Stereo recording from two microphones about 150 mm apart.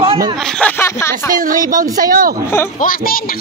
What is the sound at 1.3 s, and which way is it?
Speech, 65° right (ahead or behind).